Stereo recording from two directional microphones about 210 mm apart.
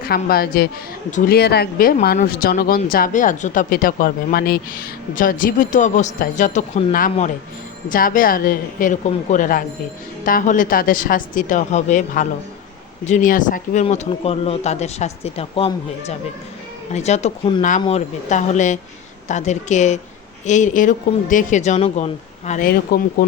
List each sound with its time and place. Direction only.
0.0 s a woman's voice: 45° left (ahead or behind)